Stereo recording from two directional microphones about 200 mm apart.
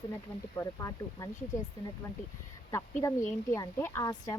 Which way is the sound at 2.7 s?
15° left (ahead or behind).